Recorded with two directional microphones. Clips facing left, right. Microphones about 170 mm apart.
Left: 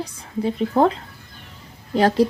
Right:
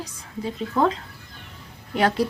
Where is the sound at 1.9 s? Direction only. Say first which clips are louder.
Left 5 dB; 30° left (ahead or behind).